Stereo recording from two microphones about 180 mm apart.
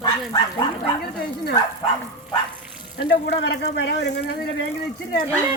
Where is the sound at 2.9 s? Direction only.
65° left (ahead or behind).